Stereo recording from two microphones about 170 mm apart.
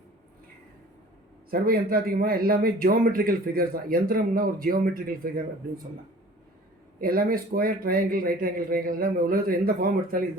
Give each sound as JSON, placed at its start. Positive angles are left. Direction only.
{"t": 1.5, "sound": "a man's voice", "side_deg": -60}
{"t": 7.0, "sound": "a man's voice", "side_deg": -60}